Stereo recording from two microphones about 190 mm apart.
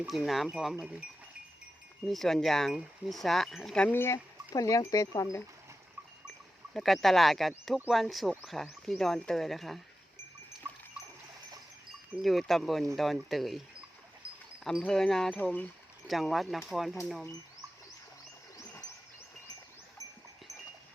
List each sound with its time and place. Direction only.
0.0 s speech: 5° right (ahead or behind)
2.0 s speech: centre (ahead or behind); by 5.4 s 15° left (ahead or behind)
6.7 s speech: centre (ahead or behind)
12.2 s speech: centre (ahead or behind)
18.5 s a sound: 15° left (ahead or behind)